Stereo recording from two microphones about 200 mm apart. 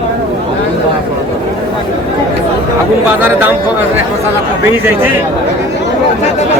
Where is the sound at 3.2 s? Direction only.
10° right (ahead or behind).